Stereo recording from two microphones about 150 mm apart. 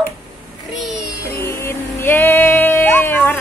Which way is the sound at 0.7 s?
Centre (ahead or behind).